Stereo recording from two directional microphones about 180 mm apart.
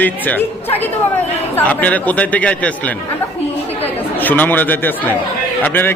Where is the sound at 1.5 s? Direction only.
10° left (ahead or behind).